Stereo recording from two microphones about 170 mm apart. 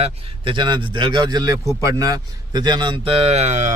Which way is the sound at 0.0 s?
30° right (ahead or behind).